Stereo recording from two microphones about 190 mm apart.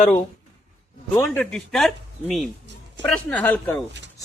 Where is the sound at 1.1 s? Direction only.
15° left (ahead or behind).